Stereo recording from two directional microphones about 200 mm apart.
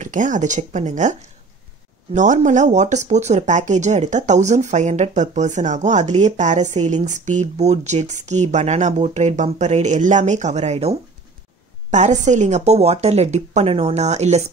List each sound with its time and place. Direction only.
0.0 s speech: 40° right (ahead or behind)
2.1 s speech: 40° right (ahead or behind)